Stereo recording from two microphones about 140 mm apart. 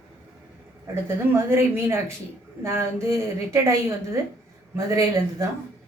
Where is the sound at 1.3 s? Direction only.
20° right (ahead or behind).